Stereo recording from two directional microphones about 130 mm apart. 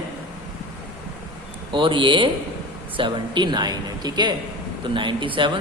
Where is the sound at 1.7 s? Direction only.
40° right (ahead or behind).